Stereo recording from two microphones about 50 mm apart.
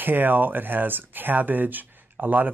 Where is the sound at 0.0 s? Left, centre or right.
Right.